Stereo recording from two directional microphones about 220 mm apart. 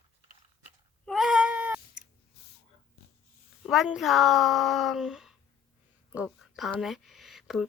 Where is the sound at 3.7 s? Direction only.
Centre (ahead or behind).